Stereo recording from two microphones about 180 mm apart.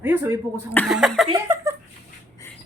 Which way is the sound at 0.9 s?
Centre (ahead or behind).